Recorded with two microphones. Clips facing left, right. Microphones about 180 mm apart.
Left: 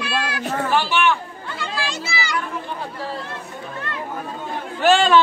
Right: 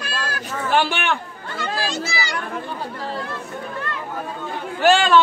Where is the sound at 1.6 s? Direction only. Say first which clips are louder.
Right 3 dB; 40° right (ahead or behind).